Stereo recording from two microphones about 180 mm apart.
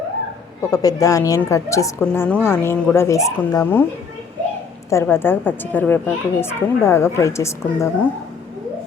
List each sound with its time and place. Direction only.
0.7 s a woman's voice: 20° left (ahead or behind)
4.9 s a woman's voice: 15° left (ahead or behind)